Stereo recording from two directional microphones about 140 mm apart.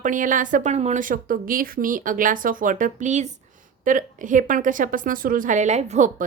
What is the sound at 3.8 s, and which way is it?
Speech, 70° right (ahead or behind).